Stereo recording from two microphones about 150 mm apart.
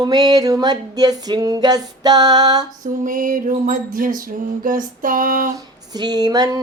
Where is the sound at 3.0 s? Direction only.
60° right (ahead or behind).